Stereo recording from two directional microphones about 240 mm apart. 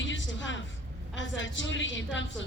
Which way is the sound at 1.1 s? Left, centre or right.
Left.